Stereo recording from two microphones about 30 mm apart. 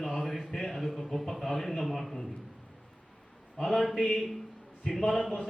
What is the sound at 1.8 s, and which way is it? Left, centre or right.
Speech, centre.